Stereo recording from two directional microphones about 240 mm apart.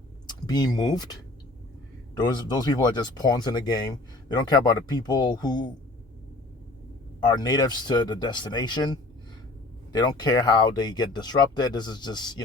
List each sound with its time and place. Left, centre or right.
0.3 s speech: centre
2.1 s speech: centre
7.2 s speech: centre